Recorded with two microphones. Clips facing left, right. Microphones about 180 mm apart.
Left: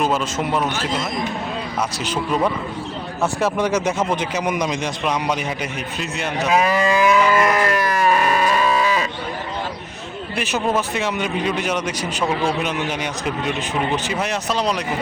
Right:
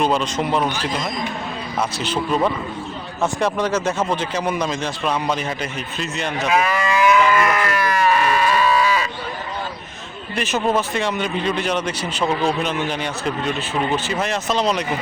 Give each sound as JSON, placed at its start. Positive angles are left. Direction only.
{"t": 0.0, "sound": "a man's voice", "side_deg": 5}
{"t": 2.0, "sound": "a man's voice", "side_deg": 5}
{"t": 6.5, "sound": "cattle", "side_deg": 35}
{"t": 10.3, "sound": "speech", "side_deg": 10}